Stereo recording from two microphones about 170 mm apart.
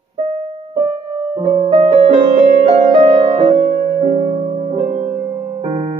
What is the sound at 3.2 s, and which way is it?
Music, 30° right (ahead or behind).